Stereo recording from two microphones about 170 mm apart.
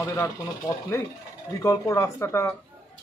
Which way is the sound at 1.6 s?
15° left (ahead or behind).